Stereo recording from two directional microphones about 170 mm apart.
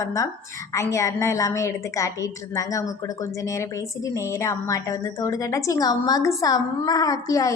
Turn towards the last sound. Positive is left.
turn(degrees=20)  # may be behind; listen again after turning